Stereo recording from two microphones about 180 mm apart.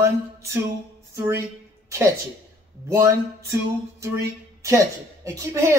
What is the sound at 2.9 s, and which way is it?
A woman's voice, 15° right (ahead or behind).